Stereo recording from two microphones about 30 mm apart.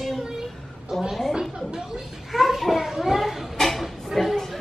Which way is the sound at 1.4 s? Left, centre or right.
Right.